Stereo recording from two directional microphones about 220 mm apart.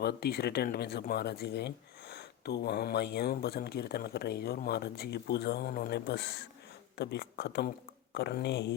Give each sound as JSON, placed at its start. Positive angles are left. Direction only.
{"t": 0.0, "sound": "speech", "side_deg": 45}